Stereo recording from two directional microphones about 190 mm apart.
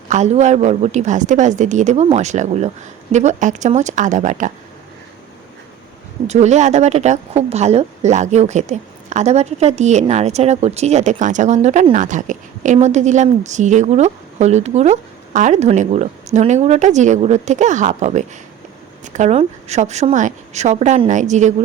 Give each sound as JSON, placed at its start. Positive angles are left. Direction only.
{"t": 0.1, "sound": "speech", "side_deg": -40}
{"t": 6.2, "sound": "speech", "side_deg": -35}